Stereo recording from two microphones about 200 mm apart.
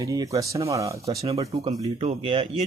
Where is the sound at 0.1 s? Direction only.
15° right (ahead or behind).